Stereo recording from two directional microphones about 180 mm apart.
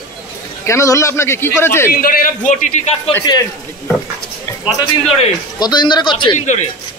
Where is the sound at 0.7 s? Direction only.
15° left (ahead or behind).